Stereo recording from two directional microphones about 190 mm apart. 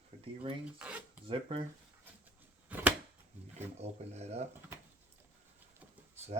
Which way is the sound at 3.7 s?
35° right (ahead or behind).